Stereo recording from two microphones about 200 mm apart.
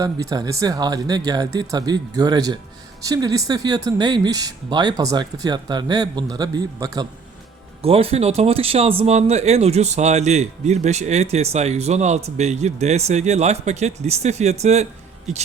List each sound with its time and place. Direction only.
0.0 s speech: 15° right (ahead or behind)
7.8 s speech: 30° right (ahead or behind)